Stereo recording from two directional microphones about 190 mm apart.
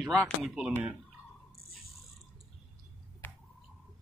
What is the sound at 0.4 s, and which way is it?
Speech, 5° right (ahead or behind).